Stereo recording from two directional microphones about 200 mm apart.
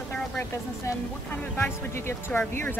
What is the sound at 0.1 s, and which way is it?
Speech, 10° left (ahead or behind).